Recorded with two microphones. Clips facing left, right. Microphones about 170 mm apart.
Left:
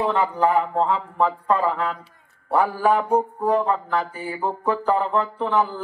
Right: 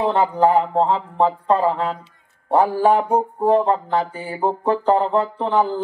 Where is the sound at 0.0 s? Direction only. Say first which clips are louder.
Right 3 dB; 30° right (ahead or behind).